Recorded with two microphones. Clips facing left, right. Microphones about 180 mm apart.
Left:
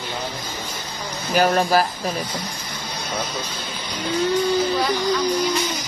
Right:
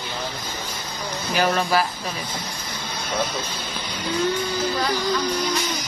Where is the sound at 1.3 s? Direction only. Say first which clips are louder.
Left 4 dB; 45° left (ahead or behind).